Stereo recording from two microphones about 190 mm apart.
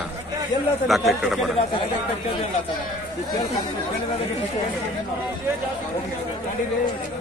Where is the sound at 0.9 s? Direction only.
Centre (ahead or behind).